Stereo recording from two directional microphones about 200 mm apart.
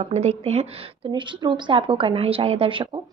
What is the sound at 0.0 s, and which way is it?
A woman's voice, 35° right (ahead or behind).